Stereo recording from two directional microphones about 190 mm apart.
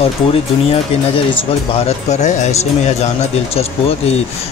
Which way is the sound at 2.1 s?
40° left (ahead or behind).